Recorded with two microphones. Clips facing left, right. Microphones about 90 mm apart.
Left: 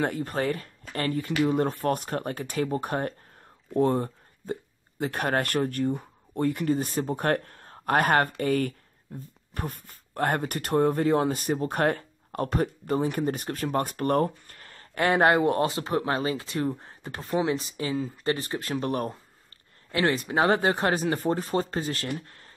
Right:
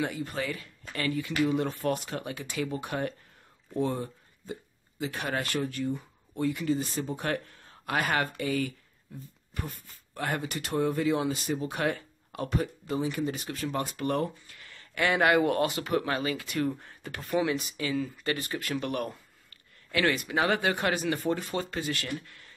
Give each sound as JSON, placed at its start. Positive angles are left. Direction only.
{"t": 0.0, "sound": "speech", "side_deg": 45}